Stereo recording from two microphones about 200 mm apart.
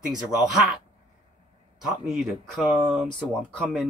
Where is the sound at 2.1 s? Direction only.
5° right (ahead or behind).